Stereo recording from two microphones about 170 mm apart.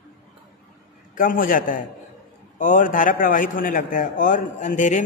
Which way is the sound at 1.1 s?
55° left (ahead or behind).